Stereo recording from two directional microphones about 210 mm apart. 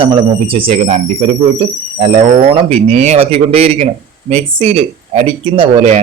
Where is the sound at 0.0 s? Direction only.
25° right (ahead or behind).